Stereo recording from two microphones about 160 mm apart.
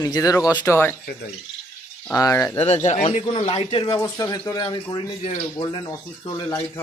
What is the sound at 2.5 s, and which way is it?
Speech, 45° left (ahead or behind).